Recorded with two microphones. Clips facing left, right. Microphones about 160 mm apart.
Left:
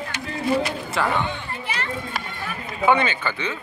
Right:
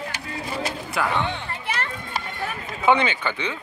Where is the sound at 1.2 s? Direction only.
65° right (ahead or behind).